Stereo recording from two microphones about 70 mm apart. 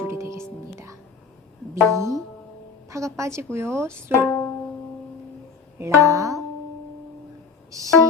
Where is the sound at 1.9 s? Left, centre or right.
Right.